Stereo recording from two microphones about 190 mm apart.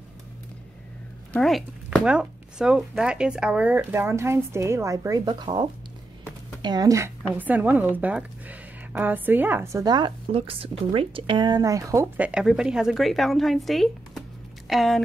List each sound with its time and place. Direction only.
1.3 s speech: centre (ahead or behind)